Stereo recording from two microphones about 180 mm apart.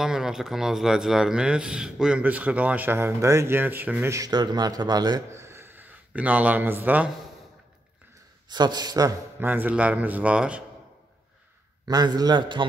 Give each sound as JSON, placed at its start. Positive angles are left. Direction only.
{"t": 0.0, "sound": "speech", "side_deg": -5}
{"t": 8.5, "sound": "speech", "side_deg": -25}
{"t": 11.9, "sound": "a man's voice", "side_deg": -20}